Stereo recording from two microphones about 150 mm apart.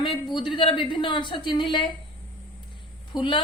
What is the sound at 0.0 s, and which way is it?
A woman's voice, 30° left (ahead or behind).